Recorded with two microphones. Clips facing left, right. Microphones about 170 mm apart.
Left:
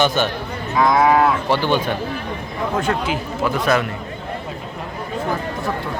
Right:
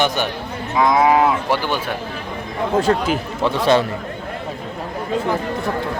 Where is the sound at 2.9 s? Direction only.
30° right (ahead or behind).